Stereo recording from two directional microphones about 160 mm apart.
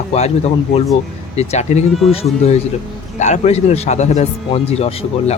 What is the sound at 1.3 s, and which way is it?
Speech, 40° left (ahead or behind).